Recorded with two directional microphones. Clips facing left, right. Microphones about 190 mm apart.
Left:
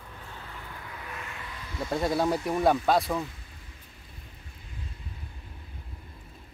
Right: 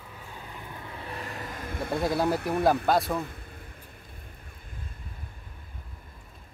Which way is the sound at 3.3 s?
55° right (ahead or behind).